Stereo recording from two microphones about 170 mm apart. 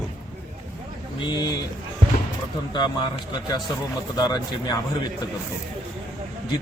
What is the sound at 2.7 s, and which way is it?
Speech, 25° left (ahead or behind).